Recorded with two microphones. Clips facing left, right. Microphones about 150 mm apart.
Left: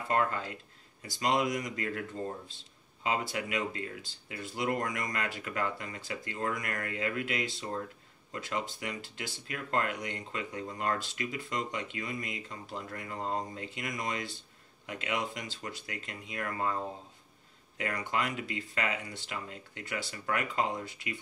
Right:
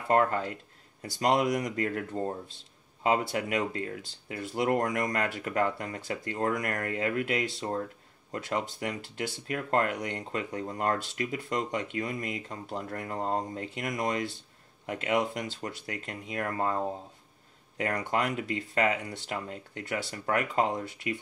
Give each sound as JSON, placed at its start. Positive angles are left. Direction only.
{"t": 0.1, "sound": "speech", "side_deg": -50}
{"t": 6.6, "sound": "speech", "side_deg": -40}